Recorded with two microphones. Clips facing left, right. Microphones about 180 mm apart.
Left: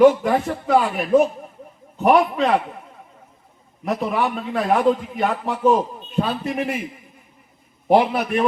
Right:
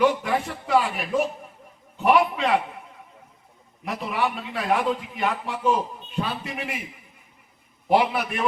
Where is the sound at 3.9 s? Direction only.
45° left (ahead or behind).